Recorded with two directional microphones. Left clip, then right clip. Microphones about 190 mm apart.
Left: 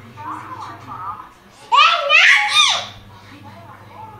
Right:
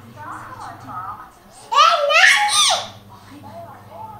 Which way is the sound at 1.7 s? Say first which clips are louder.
Left 1 dB; 25° right (ahead or behind).